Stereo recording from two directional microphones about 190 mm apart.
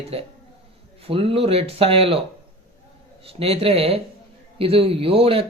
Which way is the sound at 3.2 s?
30° right (ahead or behind).